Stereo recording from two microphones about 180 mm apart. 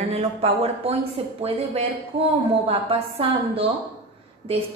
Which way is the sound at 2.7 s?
35° right (ahead or behind).